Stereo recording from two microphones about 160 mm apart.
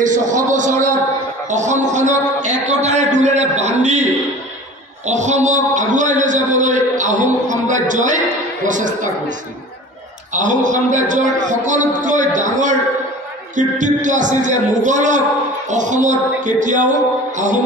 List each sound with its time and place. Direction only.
0.0 s a man's voice: 50° right (ahead or behind)
1.5 s a sound: 50° right (ahead or behind)
8.6 s a man's voice: 50° right (ahead or behind)
10.3 s a man's voice: 50° right (ahead or behind)